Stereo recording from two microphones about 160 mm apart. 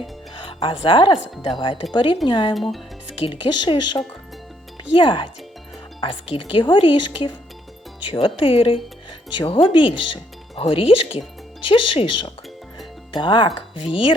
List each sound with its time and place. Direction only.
0.3 s speech: 30° left (ahead or behind)
2.6 s speech: centre (ahead or behind)
3.2 s speech: 30° left (ahead or behind)